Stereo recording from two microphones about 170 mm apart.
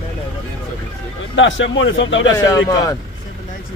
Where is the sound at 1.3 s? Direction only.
90° left.